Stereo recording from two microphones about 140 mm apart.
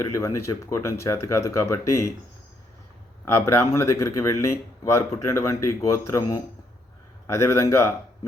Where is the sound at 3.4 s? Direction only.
20° left (ahead or behind).